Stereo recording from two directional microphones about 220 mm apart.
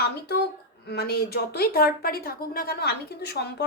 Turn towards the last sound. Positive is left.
turn(degrees=45)  # may be behind; listen again after turning